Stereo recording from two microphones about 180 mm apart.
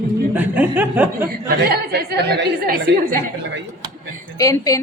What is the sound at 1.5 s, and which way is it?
A woman's voice, 60° right (ahead or behind).